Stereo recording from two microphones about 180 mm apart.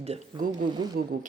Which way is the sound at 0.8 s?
20° right (ahead or behind).